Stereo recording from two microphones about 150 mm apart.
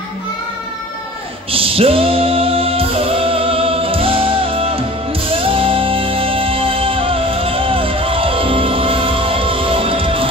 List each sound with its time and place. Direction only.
1.5 s music: 40° right (ahead or behind)